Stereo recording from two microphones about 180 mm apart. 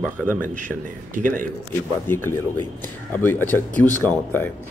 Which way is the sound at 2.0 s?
15° left (ahead or behind).